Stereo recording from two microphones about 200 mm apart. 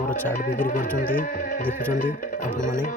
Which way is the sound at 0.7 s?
40° left (ahead or behind).